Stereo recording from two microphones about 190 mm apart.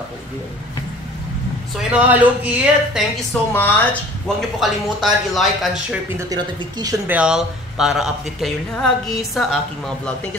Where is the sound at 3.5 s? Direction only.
10° left (ahead or behind).